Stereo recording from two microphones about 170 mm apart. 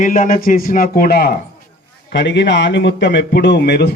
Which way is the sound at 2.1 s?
90° left.